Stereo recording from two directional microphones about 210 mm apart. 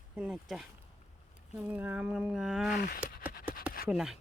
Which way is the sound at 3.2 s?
10° right (ahead or behind).